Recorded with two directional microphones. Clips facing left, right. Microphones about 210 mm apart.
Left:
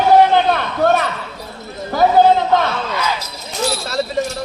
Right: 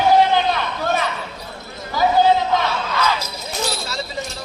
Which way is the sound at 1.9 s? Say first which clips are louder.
Left 4 dB; 55° left (ahead or behind).